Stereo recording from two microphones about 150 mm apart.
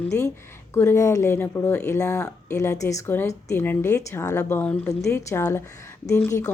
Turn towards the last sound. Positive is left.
turn(degrees=20)  # may be behind; listen again after turning